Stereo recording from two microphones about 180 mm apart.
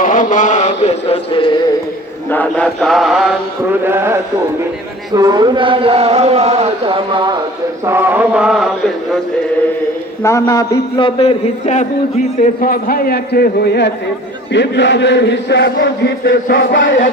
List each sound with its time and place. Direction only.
0.0 s chant: 45° left (ahead or behind); by 1.6 s 25° left (ahead or behind)
2.3 s chant: 10° left (ahead or behind)
3.8 s mantra: 15° right (ahead or behind)
5.1 s a man's voice: 20° right (ahead or behind)
7.9 s mantra: 10° right (ahead or behind)
10.2 s a man's voice: 15° left (ahead or behind); by 11.9 s 40° left (ahead or behind)
12.4 s a man's voice: 55° left (ahead or behind)
14.5 s chant: 75° left (ahead or behind); by 17.1 s 50° left (ahead or behind)